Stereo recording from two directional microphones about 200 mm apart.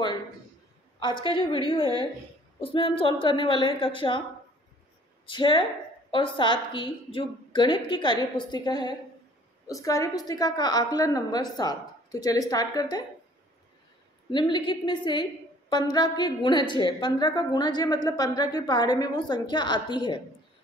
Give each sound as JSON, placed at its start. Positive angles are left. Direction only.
{"t": 0.9, "sound": "a woman's voice", "side_deg": 25}
{"t": 5.2, "sound": "a woman's voice", "side_deg": 25}
{"t": 14.3, "sound": "a woman's voice", "side_deg": 25}